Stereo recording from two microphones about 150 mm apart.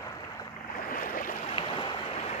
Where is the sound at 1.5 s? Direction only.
35° left (ahead or behind).